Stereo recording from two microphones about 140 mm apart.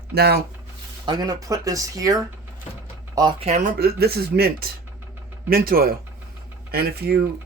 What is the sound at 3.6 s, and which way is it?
Speech, 85° right.